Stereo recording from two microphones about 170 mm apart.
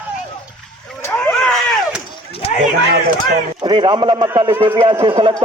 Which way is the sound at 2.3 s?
35° left (ahead or behind).